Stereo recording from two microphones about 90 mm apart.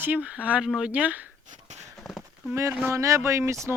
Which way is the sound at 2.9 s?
35° right (ahead or behind).